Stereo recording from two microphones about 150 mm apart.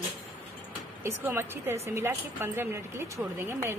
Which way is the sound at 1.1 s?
15° right (ahead or behind).